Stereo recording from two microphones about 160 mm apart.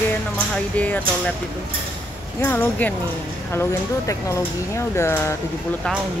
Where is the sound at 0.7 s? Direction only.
10° left (ahead or behind).